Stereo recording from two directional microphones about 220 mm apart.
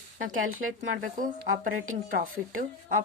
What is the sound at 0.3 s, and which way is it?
Speech, 35° right (ahead or behind).